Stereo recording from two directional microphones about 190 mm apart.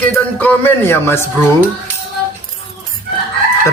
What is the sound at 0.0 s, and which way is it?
A man's voice, 10° left (ahead or behind).